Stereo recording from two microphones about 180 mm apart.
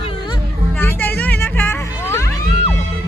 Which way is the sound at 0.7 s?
10° left (ahead or behind).